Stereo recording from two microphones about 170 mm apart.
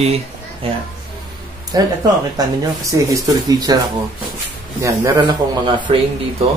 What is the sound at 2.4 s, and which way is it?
Speech, 20° right (ahead or behind).